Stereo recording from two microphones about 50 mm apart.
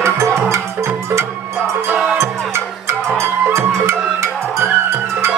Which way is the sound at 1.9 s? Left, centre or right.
Centre.